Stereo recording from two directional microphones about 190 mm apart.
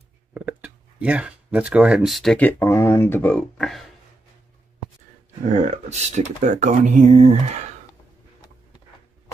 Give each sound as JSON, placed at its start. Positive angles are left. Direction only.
{"t": 0.3, "sound": "speech", "side_deg": -5}
{"t": 5.5, "sound": "speech", "side_deg": -35}